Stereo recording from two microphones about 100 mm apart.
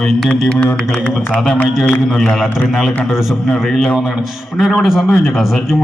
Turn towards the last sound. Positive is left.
turn(degrees=-5)  # may be behind; listen again after turning